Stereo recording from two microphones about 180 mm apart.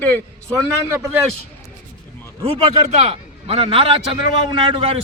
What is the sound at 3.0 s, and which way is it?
A man's voice, 30° right (ahead or behind).